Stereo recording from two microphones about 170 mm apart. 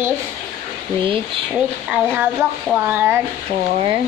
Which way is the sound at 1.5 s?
5° right (ahead or behind).